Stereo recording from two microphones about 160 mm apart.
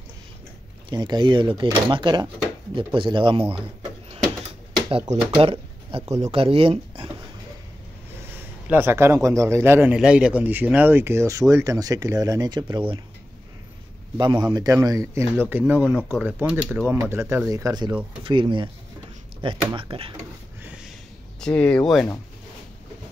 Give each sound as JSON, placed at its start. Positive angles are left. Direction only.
{"t": 0.8, "sound": "speech", "side_deg": -25}
{"t": 5.1, "sound": "speech", "side_deg": -35}
{"t": 8.3, "sound": "a man's voice", "side_deg": -15}
{"t": 14.1, "sound": "speech", "side_deg": -25}
{"t": 20.6, "sound": "a sound", "side_deg": -5}
{"t": 21.4, "sound": "speech", "side_deg": 10}